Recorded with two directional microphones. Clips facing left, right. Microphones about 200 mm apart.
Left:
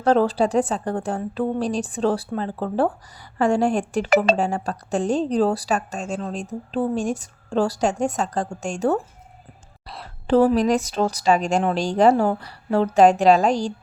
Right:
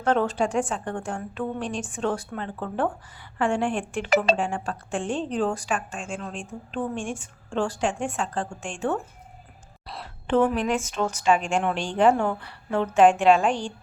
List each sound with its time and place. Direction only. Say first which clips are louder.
0.0 s a woman's voice: left 5 dB; 35° left (ahead or behind)
9.8 s a sound: even; centre (ahead or behind)
10.2 s a woman's voice: left 5 dB; 35° left (ahead or behind)